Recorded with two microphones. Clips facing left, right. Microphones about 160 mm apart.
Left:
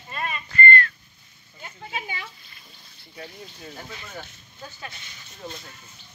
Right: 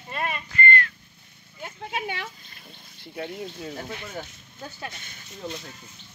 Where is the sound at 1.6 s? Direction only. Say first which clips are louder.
Right 4 dB; 60° right (ahead or behind).